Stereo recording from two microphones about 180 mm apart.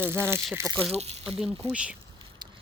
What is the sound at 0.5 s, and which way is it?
Speech, 15° right (ahead or behind).